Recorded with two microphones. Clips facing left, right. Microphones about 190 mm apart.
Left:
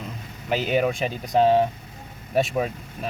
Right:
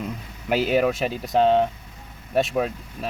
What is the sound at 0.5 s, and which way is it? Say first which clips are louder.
Speech: right 2 dB; 5° right (ahead or behind).